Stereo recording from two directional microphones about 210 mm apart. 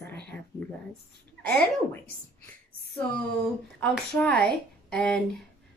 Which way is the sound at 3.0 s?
5° left (ahead or behind).